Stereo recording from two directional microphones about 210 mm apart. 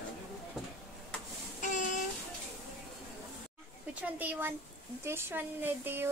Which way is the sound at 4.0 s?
10° right (ahead or behind).